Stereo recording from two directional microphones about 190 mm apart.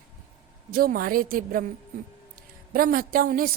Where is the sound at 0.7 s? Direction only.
50° right (ahead or behind).